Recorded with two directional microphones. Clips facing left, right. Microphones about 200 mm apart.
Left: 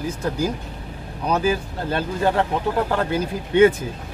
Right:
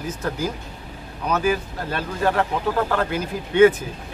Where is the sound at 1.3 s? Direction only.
30° left (ahead or behind).